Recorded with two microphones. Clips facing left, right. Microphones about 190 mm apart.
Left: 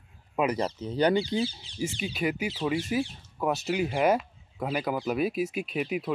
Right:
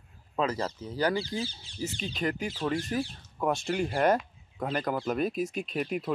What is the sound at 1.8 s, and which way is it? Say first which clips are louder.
Speech: left 3 dB; 10° left (ahead or behind).